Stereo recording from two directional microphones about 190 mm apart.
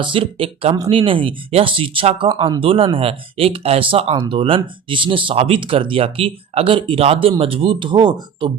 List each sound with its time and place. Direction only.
0.0 s speech: 25° right (ahead or behind)